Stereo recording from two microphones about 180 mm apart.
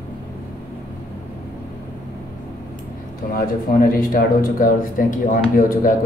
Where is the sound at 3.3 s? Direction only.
50° left (ahead or behind).